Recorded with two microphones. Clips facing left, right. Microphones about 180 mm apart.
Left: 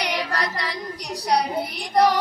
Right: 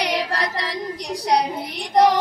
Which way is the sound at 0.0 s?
25° right (ahead or behind).